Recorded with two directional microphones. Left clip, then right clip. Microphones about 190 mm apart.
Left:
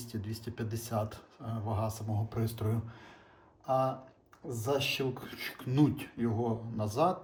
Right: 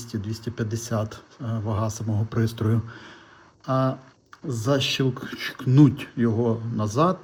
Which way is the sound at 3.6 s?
40° right (ahead or behind).